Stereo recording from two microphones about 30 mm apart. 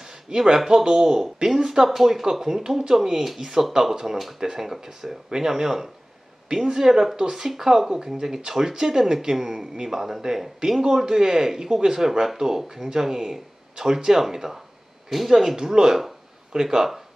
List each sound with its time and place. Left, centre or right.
0.0 s a sound: right
0.8 s speech: centre
15.5 s speech: right
16.5 s speech: right